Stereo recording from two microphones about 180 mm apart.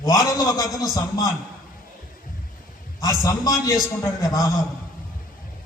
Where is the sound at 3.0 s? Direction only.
20° left (ahead or behind).